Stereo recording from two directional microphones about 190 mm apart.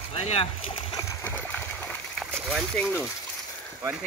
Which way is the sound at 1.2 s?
10° left (ahead or behind).